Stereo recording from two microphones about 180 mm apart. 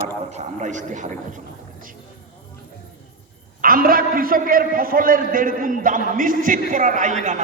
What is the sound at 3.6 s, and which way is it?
A man's voice, 55° right (ahead or behind).